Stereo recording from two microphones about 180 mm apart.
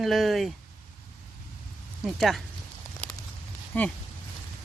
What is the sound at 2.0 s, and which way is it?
Speech, centre (ahead or behind).